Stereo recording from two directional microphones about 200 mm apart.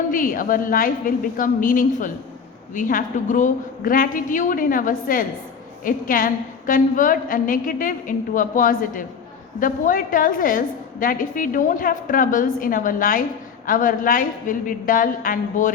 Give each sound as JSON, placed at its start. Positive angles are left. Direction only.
{"t": 0.1, "sound": "a woman's voice", "side_deg": 45}